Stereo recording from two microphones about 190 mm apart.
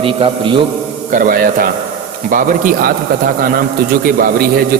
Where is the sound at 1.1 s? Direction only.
45° right (ahead or behind).